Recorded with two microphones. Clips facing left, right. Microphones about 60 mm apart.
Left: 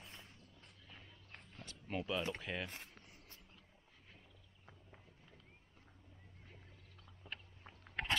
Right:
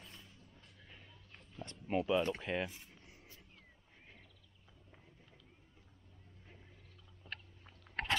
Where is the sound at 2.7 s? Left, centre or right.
Left.